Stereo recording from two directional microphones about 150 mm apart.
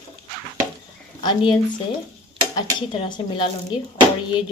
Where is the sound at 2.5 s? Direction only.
35° left (ahead or behind).